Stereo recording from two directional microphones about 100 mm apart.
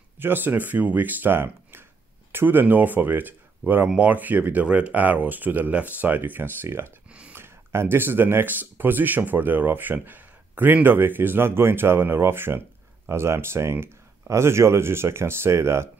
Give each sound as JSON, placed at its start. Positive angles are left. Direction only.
{"t": 0.2, "sound": "speech", "side_deg": -20}
{"t": 7.1, "sound": "a sound", "side_deg": -10}
{"t": 7.3, "sound": "speech", "side_deg": -25}